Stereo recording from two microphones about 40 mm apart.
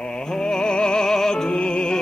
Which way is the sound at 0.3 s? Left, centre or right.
Centre.